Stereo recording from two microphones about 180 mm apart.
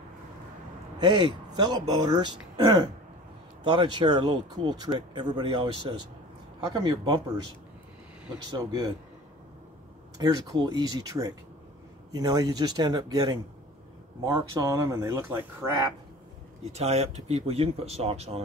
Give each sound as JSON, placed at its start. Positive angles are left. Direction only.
{"t": 0.9, "sound": "speech", "side_deg": -25}
{"t": 3.6, "sound": "speech", "side_deg": -25}
{"t": 8.5, "sound": "speech", "side_deg": -25}
{"t": 10.1, "sound": "speech", "side_deg": -20}
{"t": 16.7, "sound": "speech", "side_deg": -35}